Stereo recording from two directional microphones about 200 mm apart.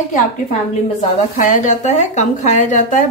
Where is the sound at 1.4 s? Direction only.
40° left (ahead or behind).